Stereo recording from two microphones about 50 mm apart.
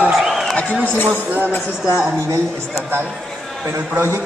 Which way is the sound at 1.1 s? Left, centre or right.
Right.